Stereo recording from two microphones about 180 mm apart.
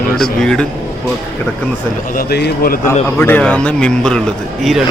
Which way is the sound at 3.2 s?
10° left (ahead or behind).